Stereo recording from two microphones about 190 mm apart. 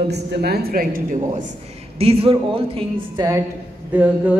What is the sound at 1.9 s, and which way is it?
A woman's voice, 30° right (ahead or behind).